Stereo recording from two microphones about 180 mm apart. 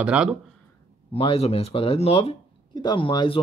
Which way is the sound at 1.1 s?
30° left (ahead or behind).